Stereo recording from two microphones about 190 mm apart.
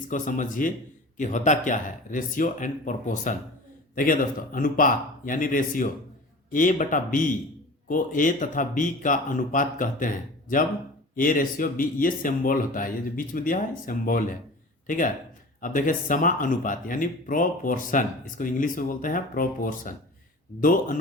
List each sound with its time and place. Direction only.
0.1 s speech: 45° left (ahead or behind)
11.1 s speech: 45° left (ahead or behind)